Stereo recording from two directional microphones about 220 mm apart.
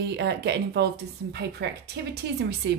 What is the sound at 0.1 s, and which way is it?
Speech, 50° right (ahead or behind).